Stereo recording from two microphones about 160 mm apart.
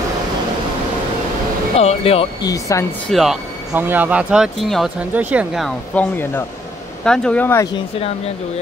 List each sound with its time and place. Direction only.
1.8 s speech: 40° left (ahead or behind)
2.4 s speech: 20° left (ahead or behind)
3.1 s speech: centre (ahead or behind)
3.7 s speech: 10° right (ahead or behind)
7.1 s speech: 5° left (ahead or behind)